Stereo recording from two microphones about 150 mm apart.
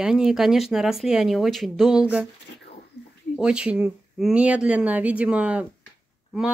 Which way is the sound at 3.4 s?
5° right (ahead or behind).